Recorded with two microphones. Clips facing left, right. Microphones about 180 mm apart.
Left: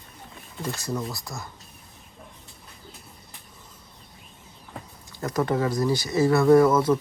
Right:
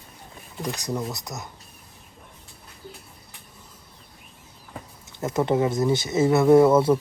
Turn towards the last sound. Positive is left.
turn(degrees=-30)  # may be behind; listen again after turning